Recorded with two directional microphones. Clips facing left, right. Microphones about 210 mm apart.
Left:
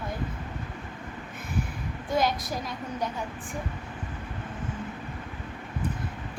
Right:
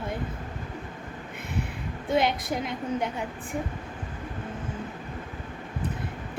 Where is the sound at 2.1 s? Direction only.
20° right (ahead or behind).